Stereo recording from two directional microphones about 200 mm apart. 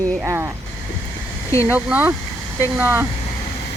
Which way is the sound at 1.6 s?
10° right (ahead or behind).